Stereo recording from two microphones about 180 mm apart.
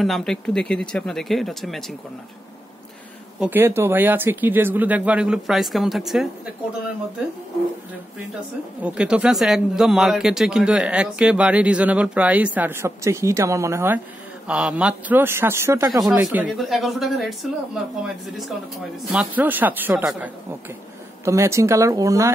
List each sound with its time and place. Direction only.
0.0 s speech: centre (ahead or behind)
3.3 s speech: 10° right (ahead or behind)
8.8 s speech: 5° right (ahead or behind)
15.9 s speech: centre (ahead or behind)
21.2 s speech: 15° right (ahead or behind)